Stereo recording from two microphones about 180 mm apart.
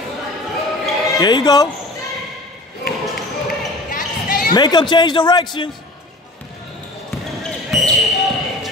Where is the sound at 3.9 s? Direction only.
45° left (ahead or behind).